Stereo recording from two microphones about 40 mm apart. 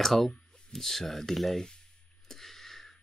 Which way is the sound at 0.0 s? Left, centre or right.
Centre.